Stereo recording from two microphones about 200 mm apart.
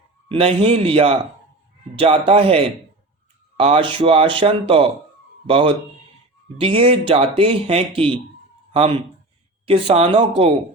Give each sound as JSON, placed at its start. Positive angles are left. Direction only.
{"t": 0.3, "sound": "speech", "side_deg": -30}